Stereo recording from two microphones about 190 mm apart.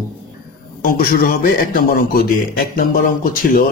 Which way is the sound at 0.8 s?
50° left (ahead or behind).